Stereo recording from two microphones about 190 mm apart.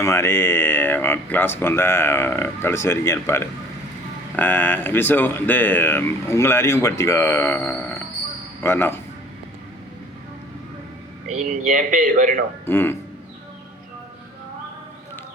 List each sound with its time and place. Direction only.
0.0 s speech: 15° left (ahead or behind)
11.3 s speech: 40° right (ahead or behind)
12.6 s speech: 10° left (ahead or behind)